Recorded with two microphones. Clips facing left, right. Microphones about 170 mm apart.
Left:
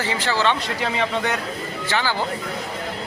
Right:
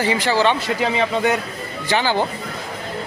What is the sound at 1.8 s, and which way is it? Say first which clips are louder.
Speech: right 5 dB; 20° right (ahead or behind).